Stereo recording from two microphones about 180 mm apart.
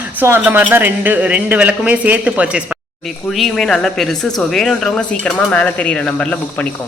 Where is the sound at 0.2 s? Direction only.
10° right (ahead or behind).